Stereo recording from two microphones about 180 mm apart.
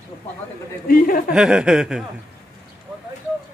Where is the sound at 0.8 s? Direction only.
55° left (ahead or behind).